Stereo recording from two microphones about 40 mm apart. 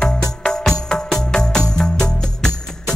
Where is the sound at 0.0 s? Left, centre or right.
Left.